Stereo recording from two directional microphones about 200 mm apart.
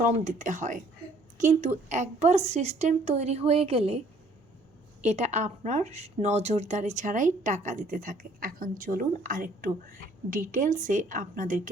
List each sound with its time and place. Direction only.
0.0 s speech: 40° right (ahead or behind)
5.0 s speech: 35° right (ahead or behind)